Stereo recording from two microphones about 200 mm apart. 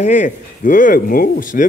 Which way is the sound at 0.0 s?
35° left (ahead or behind).